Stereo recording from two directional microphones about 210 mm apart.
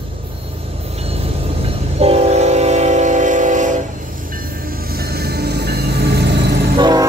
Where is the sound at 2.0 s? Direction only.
30° right (ahead or behind).